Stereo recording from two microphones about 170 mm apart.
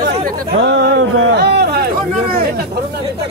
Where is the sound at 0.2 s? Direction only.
90° right; by 2.4 s 65° right (ahead or behind).